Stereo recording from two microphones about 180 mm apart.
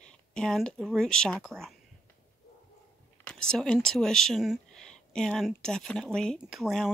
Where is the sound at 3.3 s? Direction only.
5° left (ahead or behind).